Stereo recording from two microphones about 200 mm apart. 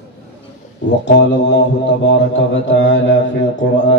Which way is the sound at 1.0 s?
60° left (ahead or behind).